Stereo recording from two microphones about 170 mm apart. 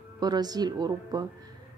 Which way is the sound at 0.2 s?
25° right (ahead or behind).